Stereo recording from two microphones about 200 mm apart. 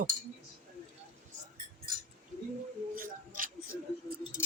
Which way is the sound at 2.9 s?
45° right (ahead or behind).